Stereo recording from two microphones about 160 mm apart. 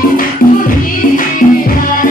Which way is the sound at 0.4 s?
60° left (ahead or behind).